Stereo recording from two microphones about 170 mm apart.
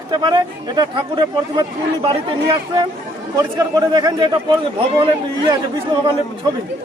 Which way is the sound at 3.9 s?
25° right (ahead or behind).